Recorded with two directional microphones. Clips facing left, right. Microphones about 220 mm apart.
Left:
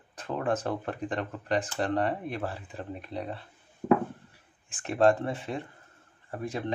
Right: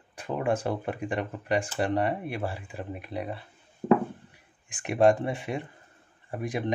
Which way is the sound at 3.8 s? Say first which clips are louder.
Right 2 dB; 20° right (ahead or behind).